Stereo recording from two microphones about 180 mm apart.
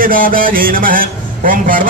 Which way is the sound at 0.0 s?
50° right (ahead or behind).